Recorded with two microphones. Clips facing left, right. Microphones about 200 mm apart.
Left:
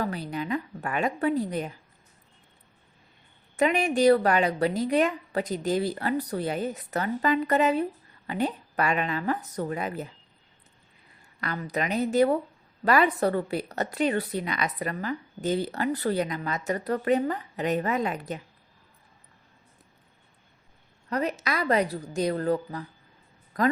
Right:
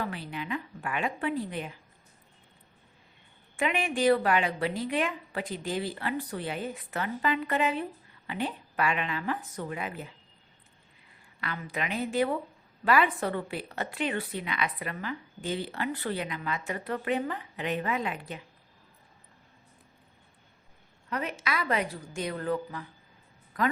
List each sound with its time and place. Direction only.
0.0 s a woman's voice: 40° left (ahead or behind)
3.6 s a woman's voice: 40° left (ahead or behind)
11.3 s a woman's voice: 40° left (ahead or behind)
21.1 s a woman's voice: 40° left (ahead or behind)